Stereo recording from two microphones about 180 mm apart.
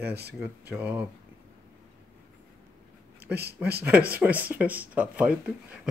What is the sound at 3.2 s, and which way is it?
Speech, 65° right (ahead or behind).